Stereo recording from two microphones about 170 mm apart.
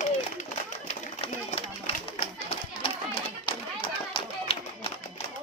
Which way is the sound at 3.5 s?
30° left (ahead or behind).